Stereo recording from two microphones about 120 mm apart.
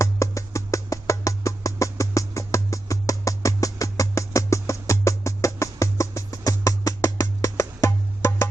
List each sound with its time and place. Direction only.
0.0 s music: 25° left (ahead or behind)